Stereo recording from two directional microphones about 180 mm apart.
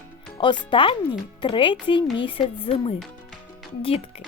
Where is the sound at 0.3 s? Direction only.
25° left (ahead or behind).